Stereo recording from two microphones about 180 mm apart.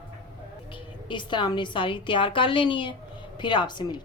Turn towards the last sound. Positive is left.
turn(degrees=25)  # may be behind; listen again after turning